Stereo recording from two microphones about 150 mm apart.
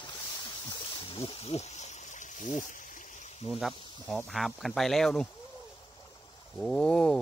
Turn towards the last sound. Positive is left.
turn(degrees=5)  # may be behind; listen again after turning